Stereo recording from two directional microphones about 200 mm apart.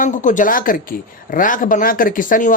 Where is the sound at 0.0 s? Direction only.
40° left (ahead or behind).